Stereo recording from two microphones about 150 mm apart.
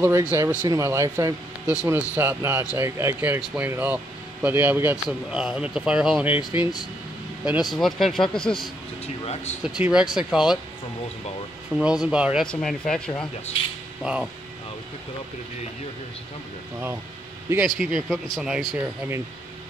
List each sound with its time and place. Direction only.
0.0 s speech: 15° right (ahead or behind); by 8.6 s 5° left (ahead or behind)
9.0 s speech: 45° left (ahead or behind)
9.6 s speech: 5° right (ahead or behind)
11.7 s speech: 5° right (ahead or behind)
12.4 s speech: 5° left (ahead or behind)
14.0 s speech: 5° right (ahead or behind)
17.7 s speech: 5° right (ahead or behind)
18.8 s speech: 15° right (ahead or behind)